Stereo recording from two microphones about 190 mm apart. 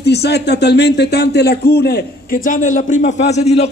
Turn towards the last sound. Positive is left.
turn(degrees=35)  # may be behind; listen again after turning